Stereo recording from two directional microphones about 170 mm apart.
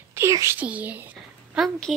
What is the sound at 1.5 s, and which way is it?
Speech, centre (ahead or behind).